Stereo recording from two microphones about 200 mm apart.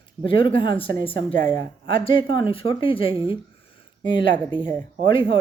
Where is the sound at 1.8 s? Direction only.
25° left (ahead or behind).